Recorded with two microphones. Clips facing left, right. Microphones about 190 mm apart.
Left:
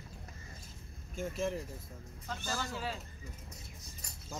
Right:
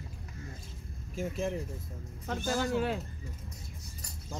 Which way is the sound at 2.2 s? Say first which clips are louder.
Right 8 dB; 55° right (ahead or behind).